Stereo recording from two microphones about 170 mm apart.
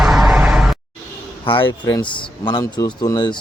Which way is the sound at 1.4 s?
30° left (ahead or behind).